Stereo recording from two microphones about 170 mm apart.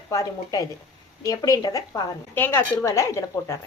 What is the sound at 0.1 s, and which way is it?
A woman's voice, 20° left (ahead or behind).